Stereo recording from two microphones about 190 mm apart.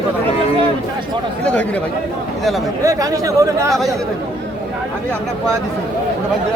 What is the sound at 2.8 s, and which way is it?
Speech, 15° right (ahead or behind).